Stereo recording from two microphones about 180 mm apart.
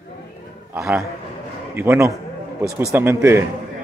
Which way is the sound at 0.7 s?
15° right (ahead or behind).